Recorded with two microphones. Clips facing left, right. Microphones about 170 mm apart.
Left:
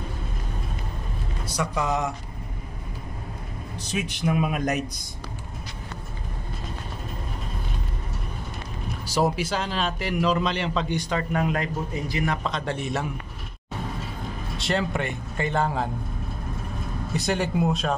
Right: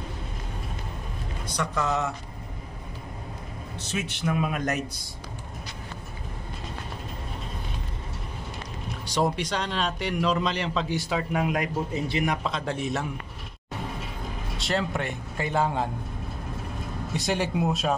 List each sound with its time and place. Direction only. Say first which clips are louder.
1.4 s speech: left 1 dB; 10° left (ahead or behind)
3.9 s speech: left 3 dB; 15° left (ahead or behind)
9.0 s a man's voice: left 2 dB; 5° left (ahead or behind); by 11.7 s 10° right (ahead or behind)
11.9 s a man's voice: even; 25° right (ahead or behind)
12.4 s a man's voice: even; centre (ahead or behind)
14.6 s a man's voice: left 2 dB; centre (ahead or behind)
17.1 s a man's voice: left 2 dB; centre (ahead or behind)